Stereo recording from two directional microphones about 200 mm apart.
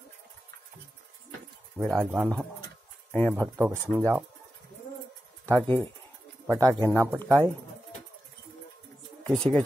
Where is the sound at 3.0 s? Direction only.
10° left (ahead or behind).